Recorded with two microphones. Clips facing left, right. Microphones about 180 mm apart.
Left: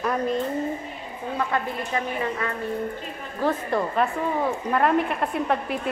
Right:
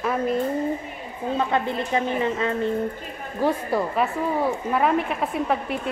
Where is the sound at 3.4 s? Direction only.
10° right (ahead or behind).